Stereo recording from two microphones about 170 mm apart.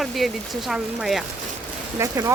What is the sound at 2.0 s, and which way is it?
Speech, 20° right (ahead or behind).